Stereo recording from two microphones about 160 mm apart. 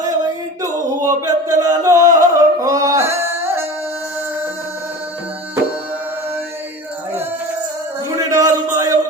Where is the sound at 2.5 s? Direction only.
20° right (ahead or behind).